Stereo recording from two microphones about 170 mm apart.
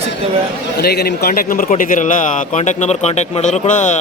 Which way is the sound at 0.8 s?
70° left (ahead or behind).